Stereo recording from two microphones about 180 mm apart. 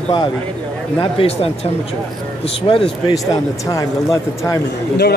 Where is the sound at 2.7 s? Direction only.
30° left (ahead or behind).